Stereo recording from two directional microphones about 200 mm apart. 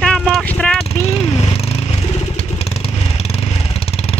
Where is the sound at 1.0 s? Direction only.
30° left (ahead or behind).